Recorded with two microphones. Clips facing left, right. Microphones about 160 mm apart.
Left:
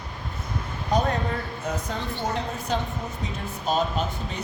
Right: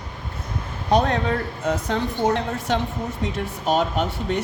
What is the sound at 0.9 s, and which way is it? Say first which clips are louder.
Speech: right 5 dB; 75° right (ahead or behind).